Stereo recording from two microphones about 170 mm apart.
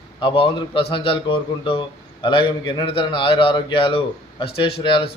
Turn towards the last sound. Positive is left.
turn(degrees=30)  # may be behind; listen again after turning